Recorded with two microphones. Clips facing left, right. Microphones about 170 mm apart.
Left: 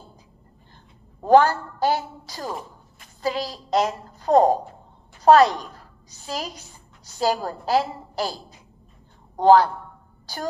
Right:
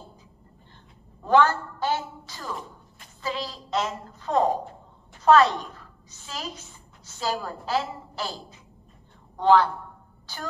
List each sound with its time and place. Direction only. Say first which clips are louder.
1.2 s a woman's voice: left 4 dB; 35° left (ahead or behind)